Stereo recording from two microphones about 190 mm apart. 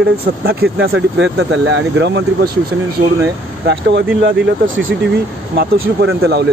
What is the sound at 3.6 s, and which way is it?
Speech, 65° right (ahead or behind).